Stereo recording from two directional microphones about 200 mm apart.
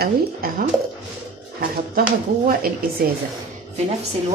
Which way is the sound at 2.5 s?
50° right (ahead or behind).